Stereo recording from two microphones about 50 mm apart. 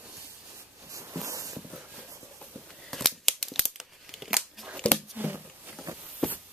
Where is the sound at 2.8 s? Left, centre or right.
Centre.